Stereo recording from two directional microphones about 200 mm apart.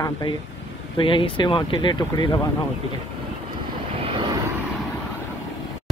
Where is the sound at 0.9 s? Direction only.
25° left (ahead or behind).